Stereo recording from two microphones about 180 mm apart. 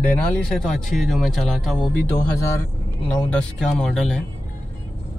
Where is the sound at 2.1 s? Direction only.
15° left (ahead or behind).